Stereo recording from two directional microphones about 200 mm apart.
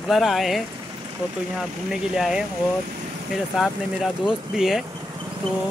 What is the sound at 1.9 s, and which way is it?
Speech, centre (ahead or behind).